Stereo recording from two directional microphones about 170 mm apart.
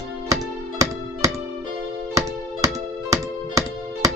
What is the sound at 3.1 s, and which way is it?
Music, 20° right (ahead or behind).